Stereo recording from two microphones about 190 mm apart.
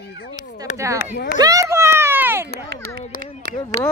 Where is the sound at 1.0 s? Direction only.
50° left (ahead or behind).